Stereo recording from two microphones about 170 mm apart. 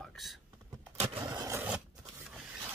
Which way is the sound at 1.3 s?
20° right (ahead or behind).